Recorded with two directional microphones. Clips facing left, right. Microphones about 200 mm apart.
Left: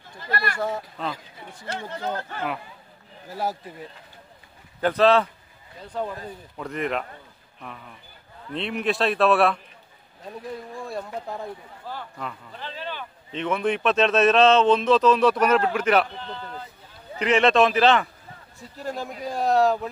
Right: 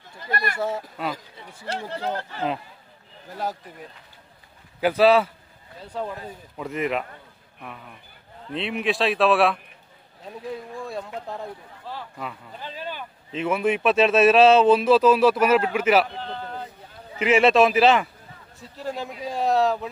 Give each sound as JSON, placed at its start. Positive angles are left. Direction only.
{"t": 0.3, "sound": "speech", "side_deg": -20}
{"t": 0.6, "sound": "a man's voice", "side_deg": -5}
{"t": 1.7, "sound": "speech", "side_deg": -35}
{"t": 3.3, "sound": "speech", "side_deg": 5}
{"t": 4.7, "sound": "a man's voice", "side_deg": -10}
{"t": 8.5, "sound": "a man's voice", "side_deg": 0}
{"t": 11.2, "sound": "speech", "side_deg": 0}
{"t": 17.2, "sound": "a man's voice", "side_deg": -5}